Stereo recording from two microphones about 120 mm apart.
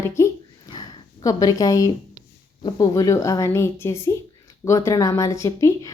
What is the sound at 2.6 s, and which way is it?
Speech, 35° left (ahead or behind).